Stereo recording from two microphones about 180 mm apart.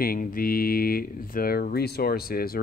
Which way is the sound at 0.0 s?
50° left (ahead or behind).